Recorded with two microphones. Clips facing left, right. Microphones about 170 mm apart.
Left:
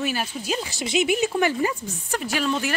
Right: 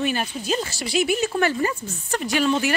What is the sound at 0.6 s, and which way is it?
Speech, 20° left (ahead or behind).